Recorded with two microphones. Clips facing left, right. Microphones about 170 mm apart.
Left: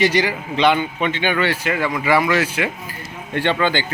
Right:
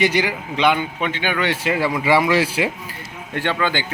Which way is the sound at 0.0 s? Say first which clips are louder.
Left 1 dB; 10° right (ahead or behind).